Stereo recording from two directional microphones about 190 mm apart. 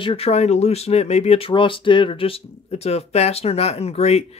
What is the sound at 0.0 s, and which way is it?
Speech, 30° left (ahead or behind).